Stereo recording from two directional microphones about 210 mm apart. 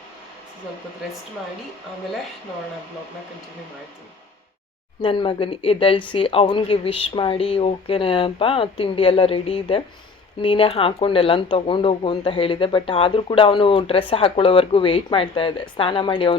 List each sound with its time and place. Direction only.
5.0 s speech: 25° left (ahead or behind)